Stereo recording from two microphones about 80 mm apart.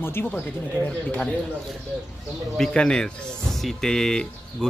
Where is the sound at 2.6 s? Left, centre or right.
Centre.